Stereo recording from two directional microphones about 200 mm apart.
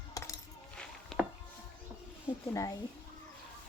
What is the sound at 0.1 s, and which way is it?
Coin, 15° left (ahead or behind).